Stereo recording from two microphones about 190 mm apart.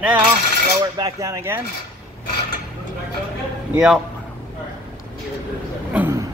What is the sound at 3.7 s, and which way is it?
Speech, centre (ahead or behind).